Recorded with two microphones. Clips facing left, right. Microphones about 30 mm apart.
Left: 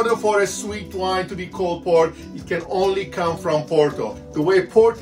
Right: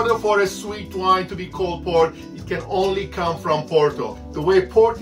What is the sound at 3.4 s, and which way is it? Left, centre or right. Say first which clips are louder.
Speech: even; right.